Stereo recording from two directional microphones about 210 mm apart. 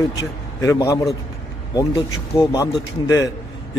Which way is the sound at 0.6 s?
15° left (ahead or behind).